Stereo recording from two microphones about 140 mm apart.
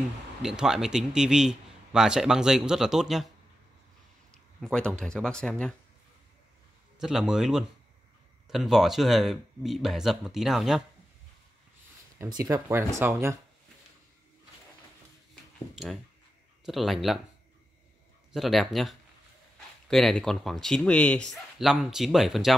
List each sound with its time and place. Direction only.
0.4 s a man's voice: 5° right (ahead or behind)
4.3 s speech: 5° left (ahead or behind)
7.0 s a man's voice: 5° right (ahead or behind)
12.3 s speech: 25° right (ahead or behind)
15.7 s a man's voice: centre (ahead or behind)
18.3 s a man's voice: centre (ahead or behind)